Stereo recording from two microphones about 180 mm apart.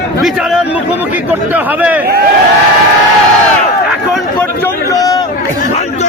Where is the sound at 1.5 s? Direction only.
10° right (ahead or behind).